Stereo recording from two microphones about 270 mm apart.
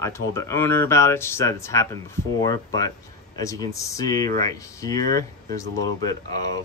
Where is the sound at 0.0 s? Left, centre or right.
Centre.